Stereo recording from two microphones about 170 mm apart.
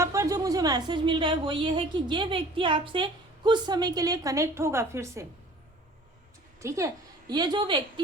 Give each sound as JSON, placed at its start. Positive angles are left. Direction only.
{"t": 0.0, "sound": "a woman's voice", "side_deg": -20}
{"t": 6.6, "sound": "a woman's voice", "side_deg": -15}